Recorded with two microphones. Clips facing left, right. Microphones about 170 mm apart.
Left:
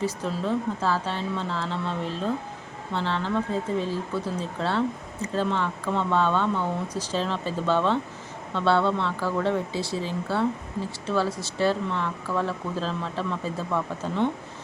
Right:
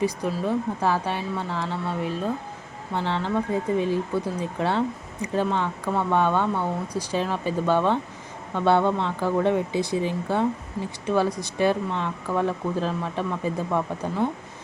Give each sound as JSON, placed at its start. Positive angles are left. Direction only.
{"t": 0.0, "sound": "speech", "side_deg": -15}